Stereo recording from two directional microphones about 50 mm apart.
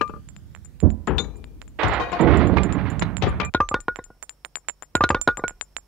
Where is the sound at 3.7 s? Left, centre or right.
Centre.